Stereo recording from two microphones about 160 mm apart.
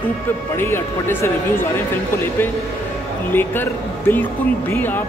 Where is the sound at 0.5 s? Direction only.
15° left (ahead or behind).